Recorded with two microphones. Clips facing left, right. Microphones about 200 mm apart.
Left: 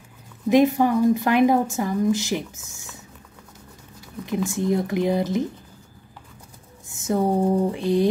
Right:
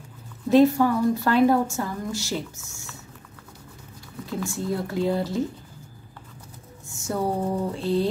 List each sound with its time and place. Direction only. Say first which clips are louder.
0.5 s a woman's voice: even; 15° left (ahead or behind)
4.3 s a woman's voice: left 5 dB; 20° left (ahead or behind)
6.9 s a sound: left 5 dB; 20° left (ahead or behind)
7.7 s a woman's voice: left 3 dB; 15° left (ahead or behind)